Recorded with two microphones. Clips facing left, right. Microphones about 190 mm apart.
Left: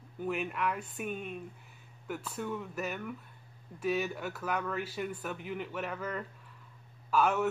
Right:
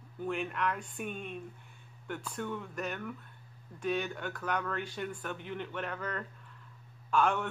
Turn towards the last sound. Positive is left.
turn(degrees=5)  # may be behind; listen again after turning